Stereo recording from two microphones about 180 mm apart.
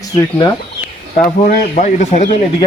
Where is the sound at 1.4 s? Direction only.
40° left (ahead or behind).